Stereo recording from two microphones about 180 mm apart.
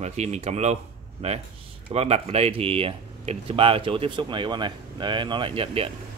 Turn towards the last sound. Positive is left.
turn(degrees=-30)  # may be behind; listen again after turning